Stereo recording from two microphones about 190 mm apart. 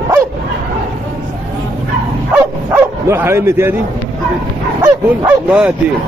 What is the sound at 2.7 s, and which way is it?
Speech, 10° right (ahead or behind).